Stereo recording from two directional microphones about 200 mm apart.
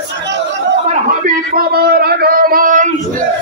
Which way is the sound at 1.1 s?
50° right (ahead or behind).